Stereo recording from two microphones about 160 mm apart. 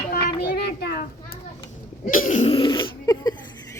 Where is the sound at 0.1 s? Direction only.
80° left.